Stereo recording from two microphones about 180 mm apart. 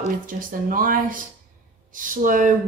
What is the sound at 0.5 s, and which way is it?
Speech, 50° right (ahead or behind).